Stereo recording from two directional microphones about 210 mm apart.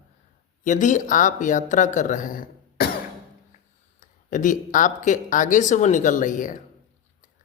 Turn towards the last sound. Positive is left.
turn(degrees=40)  # may be behind; listen again after turning